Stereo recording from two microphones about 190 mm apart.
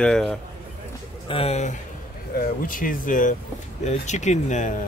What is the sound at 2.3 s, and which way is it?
Speech, 50° left (ahead or behind).